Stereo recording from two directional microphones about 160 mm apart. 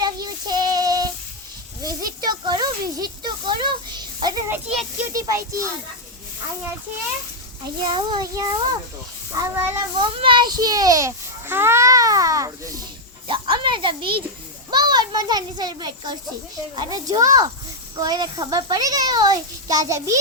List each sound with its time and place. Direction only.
0.0 s child singing: 25° right (ahead or behind)
1.8 s a sound: 20° right (ahead or behind)
5.0 s a child's voice: 20° right (ahead or behind)
7.9 s a child's voice: 30° right (ahead or behind)
10.0 s a child's voice: 35° right (ahead or behind)
13.2 s a child's voice: 30° right (ahead or behind)